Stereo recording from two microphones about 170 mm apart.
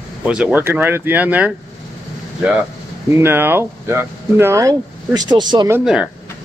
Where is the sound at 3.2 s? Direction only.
15° right (ahead or behind).